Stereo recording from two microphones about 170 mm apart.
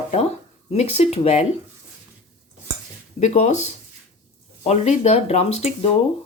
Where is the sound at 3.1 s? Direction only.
40° left (ahead or behind).